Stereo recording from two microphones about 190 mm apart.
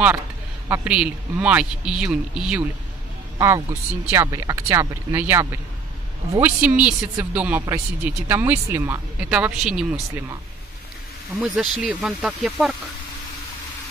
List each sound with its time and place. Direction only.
0.7 s a man's voice: 5° right (ahead or behind)
3.3 s speech: 15° right (ahead or behind)
11.3 s a man's voice: 5° right (ahead or behind)